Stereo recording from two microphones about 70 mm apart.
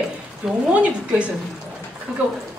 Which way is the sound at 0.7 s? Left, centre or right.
Centre.